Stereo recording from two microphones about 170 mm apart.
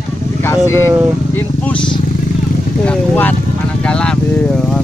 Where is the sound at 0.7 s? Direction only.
15° left (ahead or behind).